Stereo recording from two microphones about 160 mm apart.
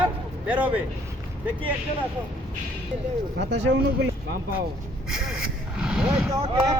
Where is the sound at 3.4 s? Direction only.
90° right.